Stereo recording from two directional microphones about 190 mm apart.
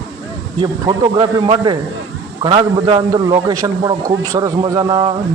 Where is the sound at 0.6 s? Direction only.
25° right (ahead or behind).